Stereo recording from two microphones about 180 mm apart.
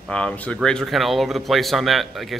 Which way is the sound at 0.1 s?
5° left (ahead or behind).